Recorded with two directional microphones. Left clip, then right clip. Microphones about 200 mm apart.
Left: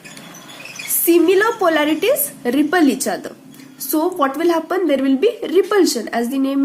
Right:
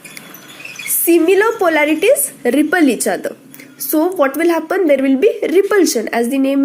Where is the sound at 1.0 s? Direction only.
25° right (ahead or behind).